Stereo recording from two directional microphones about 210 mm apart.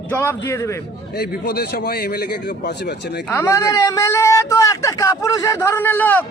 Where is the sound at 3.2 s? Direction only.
10° left (ahead or behind).